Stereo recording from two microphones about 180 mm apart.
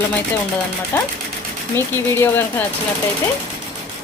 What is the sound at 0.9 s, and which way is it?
A woman's voice, 15° left (ahead or behind).